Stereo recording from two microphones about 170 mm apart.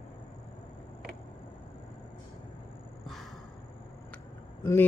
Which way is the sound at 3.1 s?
Centre (ahead or behind).